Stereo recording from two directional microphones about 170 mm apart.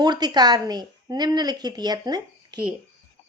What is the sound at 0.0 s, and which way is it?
Speech, 25° right (ahead or behind).